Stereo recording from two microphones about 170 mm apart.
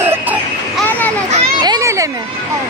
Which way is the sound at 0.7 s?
10° left (ahead or behind).